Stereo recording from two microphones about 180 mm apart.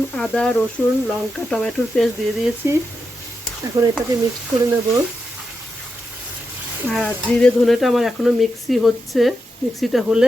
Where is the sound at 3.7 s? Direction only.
20° right (ahead or behind).